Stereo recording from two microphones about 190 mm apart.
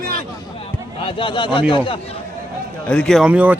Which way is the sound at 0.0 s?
50° right (ahead or behind).